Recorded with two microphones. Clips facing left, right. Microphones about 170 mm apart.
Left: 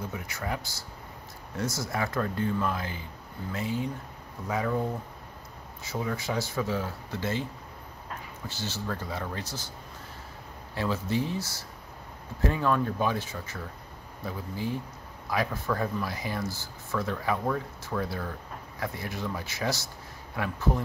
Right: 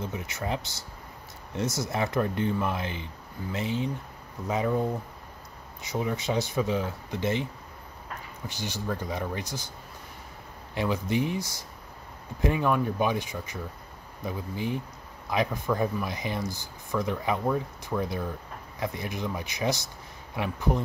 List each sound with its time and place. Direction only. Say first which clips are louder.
0.0 s speech: right 2 dB; 20° right (ahead or behind)
8.5 s speech: right 2 dB; 15° right (ahead or behind)
10.7 s speech: right 2 dB; 15° right (ahead or behind)